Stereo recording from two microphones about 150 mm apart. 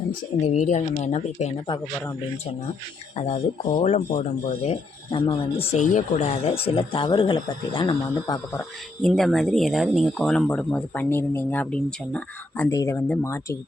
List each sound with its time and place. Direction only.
0.1 s speech: 50° left (ahead or behind)
3.2 s speech: 45° left (ahead or behind)
5.2 s speech: 35° left (ahead or behind)
5.7 s speech: 50° left (ahead or behind); by 7.9 s 35° left (ahead or behind)
7.9 s speech: 20° left (ahead or behind)
9.0 s speech: 5° left (ahead or behind)
12.7 s speech: 20° left (ahead or behind)